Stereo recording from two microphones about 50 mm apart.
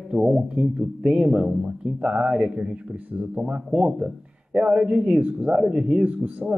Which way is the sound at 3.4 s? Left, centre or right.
Centre.